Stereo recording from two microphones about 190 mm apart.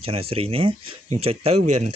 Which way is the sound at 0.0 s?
30° right (ahead or behind).